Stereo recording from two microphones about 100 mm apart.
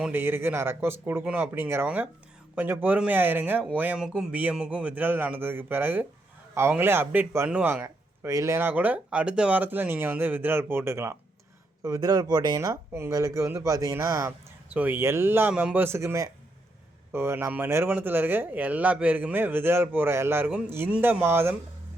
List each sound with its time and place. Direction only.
0.1 s speech: 20° right (ahead or behind)
7.9 s speech: 30° right (ahead or behind)
11.8 s speech: 40° right (ahead or behind)
12.5 s speech: 30° right (ahead or behind)
14.7 s speech: 15° right (ahead or behind)